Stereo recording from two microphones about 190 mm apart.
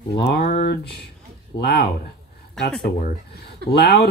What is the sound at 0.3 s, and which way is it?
Speech, 55° left (ahead or behind).